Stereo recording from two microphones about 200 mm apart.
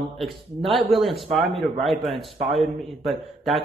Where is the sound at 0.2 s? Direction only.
Centre (ahead or behind).